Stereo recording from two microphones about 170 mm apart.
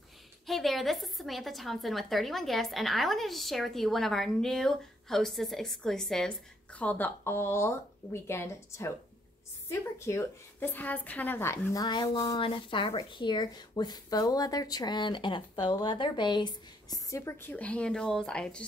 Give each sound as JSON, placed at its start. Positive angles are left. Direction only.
{"t": 0.5, "sound": "a woman's voice", "side_deg": 0}